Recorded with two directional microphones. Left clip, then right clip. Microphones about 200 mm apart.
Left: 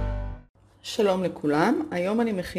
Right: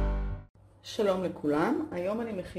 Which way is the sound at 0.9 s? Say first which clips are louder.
Left 5 dB; 25° left (ahead or behind).